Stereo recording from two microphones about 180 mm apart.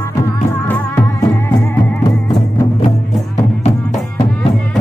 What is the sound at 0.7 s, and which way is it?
Music, 10° left (ahead or behind).